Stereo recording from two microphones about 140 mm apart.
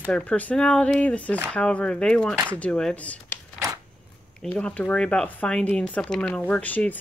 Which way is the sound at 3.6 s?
25° right (ahead or behind).